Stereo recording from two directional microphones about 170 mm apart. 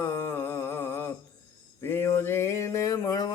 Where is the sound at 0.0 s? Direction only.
15° left (ahead or behind).